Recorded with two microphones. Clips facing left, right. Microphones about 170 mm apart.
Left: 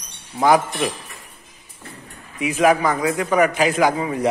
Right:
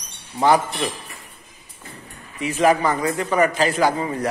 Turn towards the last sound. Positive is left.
turn(degrees=10)  # may be behind; listen again after turning